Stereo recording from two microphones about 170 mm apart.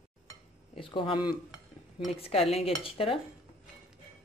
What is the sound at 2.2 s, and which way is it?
Stir, 35° left (ahead or behind).